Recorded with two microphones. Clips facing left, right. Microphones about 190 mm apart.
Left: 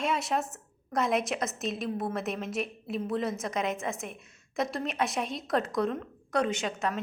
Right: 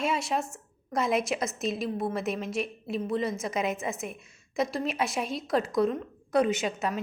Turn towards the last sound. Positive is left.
turn(degrees=-5)  # may be behind; listen again after turning